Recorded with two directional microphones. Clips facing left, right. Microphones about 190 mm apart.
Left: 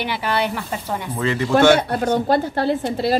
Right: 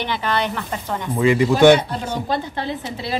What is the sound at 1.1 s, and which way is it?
Speech, 15° right (ahead or behind).